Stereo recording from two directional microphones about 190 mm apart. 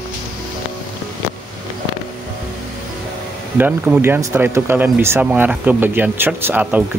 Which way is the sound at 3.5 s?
10° right (ahead or behind).